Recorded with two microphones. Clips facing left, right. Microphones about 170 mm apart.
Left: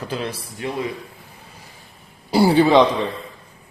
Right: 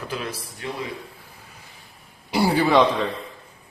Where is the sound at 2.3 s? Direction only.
30° left (ahead or behind).